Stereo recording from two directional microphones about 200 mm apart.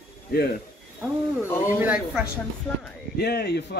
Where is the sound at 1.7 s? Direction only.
10° right (ahead or behind).